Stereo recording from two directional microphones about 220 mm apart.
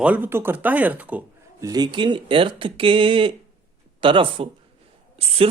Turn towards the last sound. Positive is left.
turn(degrees=-25)  # may be behind; listen again after turning